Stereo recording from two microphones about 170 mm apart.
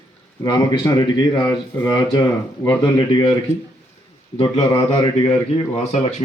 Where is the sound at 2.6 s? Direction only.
20° left (ahead or behind).